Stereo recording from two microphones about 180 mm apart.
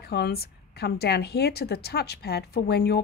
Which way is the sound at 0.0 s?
60° left (ahead or behind).